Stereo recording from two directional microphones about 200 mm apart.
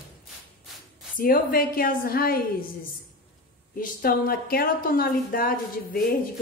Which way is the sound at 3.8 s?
50° left (ahead or behind).